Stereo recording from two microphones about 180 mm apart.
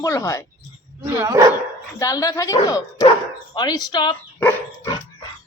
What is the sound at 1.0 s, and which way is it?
Speech, 15° right (ahead or behind).